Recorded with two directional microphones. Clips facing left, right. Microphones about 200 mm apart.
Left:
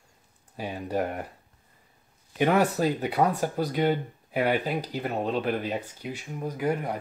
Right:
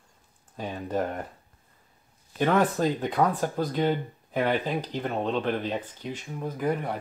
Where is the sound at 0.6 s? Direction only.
10° left (ahead or behind).